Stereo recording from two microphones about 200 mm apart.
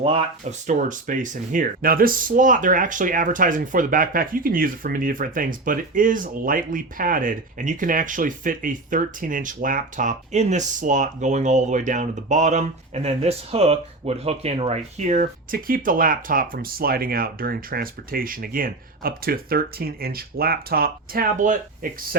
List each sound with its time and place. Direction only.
0.0 s speech: 30° right (ahead or behind)
0.7 s speech: 40° right (ahead or behind)